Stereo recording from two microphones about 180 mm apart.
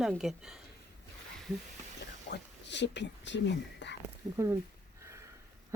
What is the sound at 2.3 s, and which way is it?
Speech, 75° left (ahead or behind).